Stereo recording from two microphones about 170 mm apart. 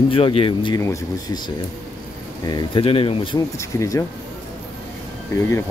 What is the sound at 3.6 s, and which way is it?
Speech, 20° left (ahead or behind).